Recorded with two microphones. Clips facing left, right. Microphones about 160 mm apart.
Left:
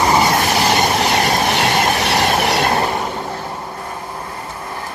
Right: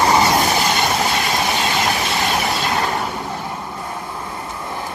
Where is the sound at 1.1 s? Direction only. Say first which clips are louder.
Left 4 dB; 65° left (ahead or behind).